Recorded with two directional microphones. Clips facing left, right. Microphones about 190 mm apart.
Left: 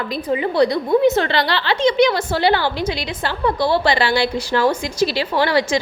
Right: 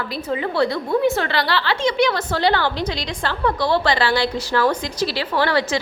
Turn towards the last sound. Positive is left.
turn(degrees=15)  # may be behind; listen again after turning